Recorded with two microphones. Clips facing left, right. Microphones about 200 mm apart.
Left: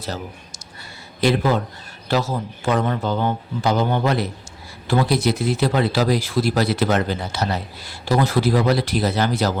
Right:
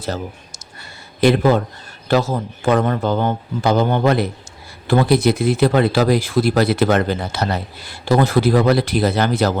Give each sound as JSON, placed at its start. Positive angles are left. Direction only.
{"t": 0.0, "sound": "a man's voice", "side_deg": -50}